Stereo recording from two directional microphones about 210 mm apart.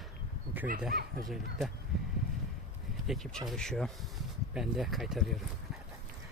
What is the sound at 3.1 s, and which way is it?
Speech, centre (ahead or behind).